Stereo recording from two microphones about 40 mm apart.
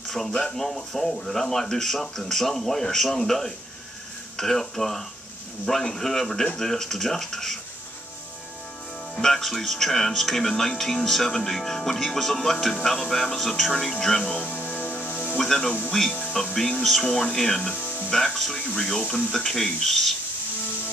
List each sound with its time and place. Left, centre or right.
0.1 s speech: centre
9.1 s speech: centre
14.3 s speech: left
15.3 s speech: centre
17.7 s music: left
18.1 s speech: centre